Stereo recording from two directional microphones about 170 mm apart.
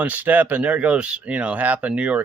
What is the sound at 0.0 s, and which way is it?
Speech, 10° right (ahead or behind).